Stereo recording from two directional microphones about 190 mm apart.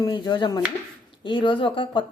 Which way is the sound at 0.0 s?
20° left (ahead or behind).